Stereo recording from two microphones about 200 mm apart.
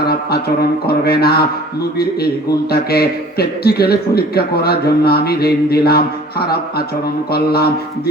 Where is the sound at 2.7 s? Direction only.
50° left (ahead or behind).